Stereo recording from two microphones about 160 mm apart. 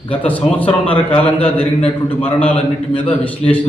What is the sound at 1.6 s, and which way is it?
Speech, 35° left (ahead or behind).